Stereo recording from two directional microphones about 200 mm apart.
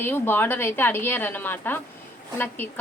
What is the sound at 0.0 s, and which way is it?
A woman's voice, 10° left (ahead or behind).